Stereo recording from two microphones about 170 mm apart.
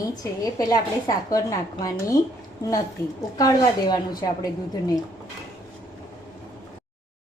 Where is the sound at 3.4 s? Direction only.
20° left (ahead or behind).